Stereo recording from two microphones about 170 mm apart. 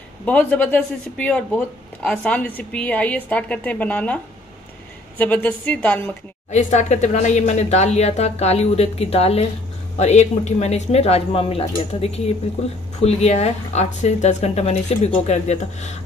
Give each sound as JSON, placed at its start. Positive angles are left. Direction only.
{"t": 0.2, "sound": "a woman's voice", "side_deg": 10}
{"t": 6.5, "sound": "speech", "side_deg": 45}